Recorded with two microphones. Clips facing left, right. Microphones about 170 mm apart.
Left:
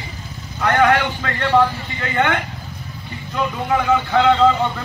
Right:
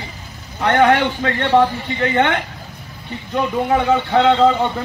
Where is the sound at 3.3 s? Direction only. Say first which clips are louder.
Right 3 dB; 25° right (ahead or behind).